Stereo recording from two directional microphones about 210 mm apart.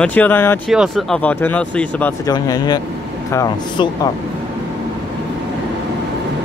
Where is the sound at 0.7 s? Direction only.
Centre (ahead or behind); by 4.1 s 20° left (ahead or behind).